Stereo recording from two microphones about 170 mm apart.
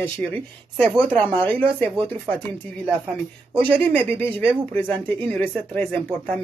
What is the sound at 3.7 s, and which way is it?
Speech, 10° left (ahead or behind).